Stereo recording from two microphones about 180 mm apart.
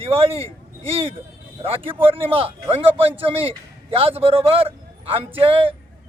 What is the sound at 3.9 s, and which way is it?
A man's voice, 30° right (ahead or behind).